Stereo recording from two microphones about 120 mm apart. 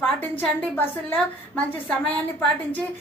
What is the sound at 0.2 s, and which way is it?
A woman's voice, 15° left (ahead or behind).